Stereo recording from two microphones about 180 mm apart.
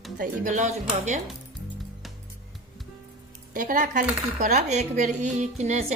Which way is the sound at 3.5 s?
45° right (ahead or behind).